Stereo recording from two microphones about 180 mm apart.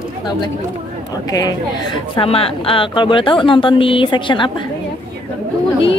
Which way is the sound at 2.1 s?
30° left (ahead or behind).